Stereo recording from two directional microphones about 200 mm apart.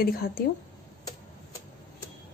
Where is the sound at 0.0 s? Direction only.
50° left (ahead or behind).